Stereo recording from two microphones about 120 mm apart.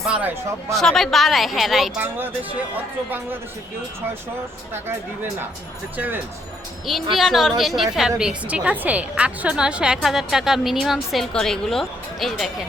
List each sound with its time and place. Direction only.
0.0 s speech: 10° right (ahead or behind)
0.7 s a woman's voice: centre (ahead or behind)
2.0 s speech: 15° right (ahead or behind)
6.8 s a woman's voice: centre (ahead or behind)